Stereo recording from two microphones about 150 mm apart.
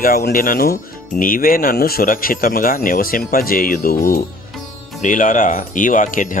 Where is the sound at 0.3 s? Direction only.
75° left (ahead or behind).